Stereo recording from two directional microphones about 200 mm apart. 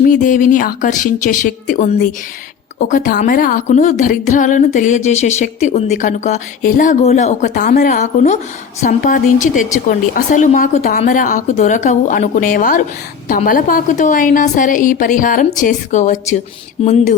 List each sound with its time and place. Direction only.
0.0 s a woman's voice: 40° left (ahead or behind)